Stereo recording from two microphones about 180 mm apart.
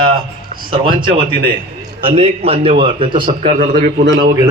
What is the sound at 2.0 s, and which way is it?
A man's voice, 30° right (ahead or behind).